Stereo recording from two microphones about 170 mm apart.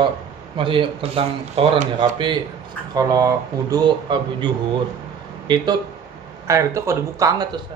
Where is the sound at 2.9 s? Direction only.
20° right (ahead or behind).